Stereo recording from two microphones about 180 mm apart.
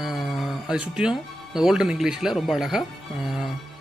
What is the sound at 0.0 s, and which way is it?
Speech, centre (ahead or behind).